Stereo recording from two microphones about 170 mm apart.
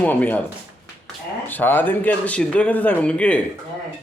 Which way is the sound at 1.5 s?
10° left (ahead or behind).